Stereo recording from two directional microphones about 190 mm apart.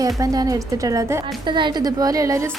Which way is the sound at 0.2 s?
15° right (ahead or behind).